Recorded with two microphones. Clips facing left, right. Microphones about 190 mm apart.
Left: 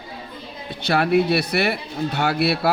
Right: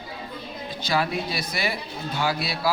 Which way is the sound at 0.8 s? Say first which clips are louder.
Left 8 dB; 65° left (ahead or behind).